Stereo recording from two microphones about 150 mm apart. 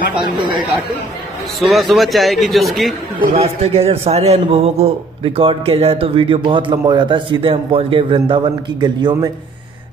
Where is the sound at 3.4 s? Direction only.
40° right (ahead or behind).